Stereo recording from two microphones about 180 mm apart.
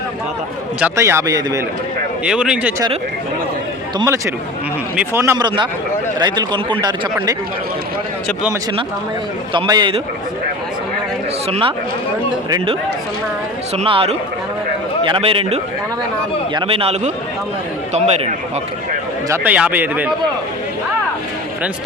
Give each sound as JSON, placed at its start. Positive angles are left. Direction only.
{"t": 0.8, "sound": "a man's voice", "side_deg": -15}
{"t": 2.2, "sound": "speech", "side_deg": -5}
{"t": 3.9, "sound": "a man's voice", "side_deg": -15}
{"t": 9.5, "sound": "speech", "side_deg": -25}
{"t": 11.4, "sound": "a man's voice", "side_deg": -35}
{"t": 13.7, "sound": "a man's voice", "side_deg": -30}
{"t": 19.3, "sound": "a man's voice", "side_deg": -10}